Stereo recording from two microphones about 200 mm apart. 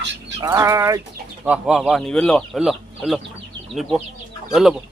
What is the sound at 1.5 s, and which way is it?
Speech, 5° right (ahead or behind).